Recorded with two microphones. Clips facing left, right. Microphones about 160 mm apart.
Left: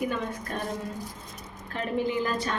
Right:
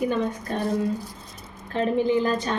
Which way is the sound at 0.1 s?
30° right (ahead or behind).